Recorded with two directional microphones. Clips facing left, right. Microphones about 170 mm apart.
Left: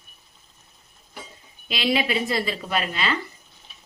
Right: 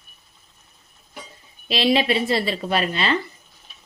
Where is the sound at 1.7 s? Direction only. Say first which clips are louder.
Right 4 dB; 30° right (ahead or behind).